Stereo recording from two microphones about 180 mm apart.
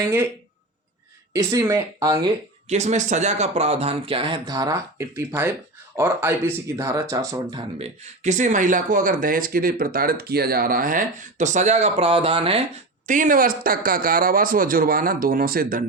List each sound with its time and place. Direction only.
1.3 s speech: 15° right (ahead or behind)
2.6 s speech: 40° right (ahead or behind); by 7.6 s 20° right (ahead or behind)
7.8 s speech: 40° right (ahead or behind)
13.1 s speech: 45° right (ahead or behind)